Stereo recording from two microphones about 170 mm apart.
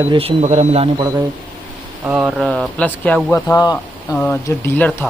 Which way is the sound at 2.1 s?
5° right (ahead or behind).